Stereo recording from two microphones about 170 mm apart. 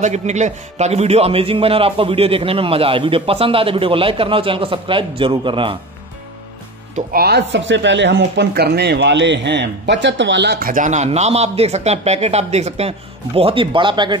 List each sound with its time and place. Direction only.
0.0 s a man's voice: 45° right (ahead or behind)
7.1 s speech: 65° right (ahead or behind); by 10.7 s 85° right
10.7 s a man's voice: 45° right (ahead or behind); by 14.1 s 30° right (ahead or behind)